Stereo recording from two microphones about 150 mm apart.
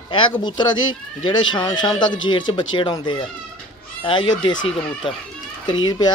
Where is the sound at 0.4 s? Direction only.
30° left (ahead or behind).